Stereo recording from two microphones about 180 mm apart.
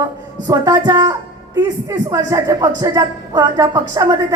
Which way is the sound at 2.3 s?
20° right (ahead or behind).